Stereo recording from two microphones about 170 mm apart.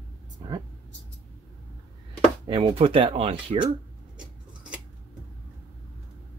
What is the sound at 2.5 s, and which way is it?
Speech, 30° right (ahead or behind).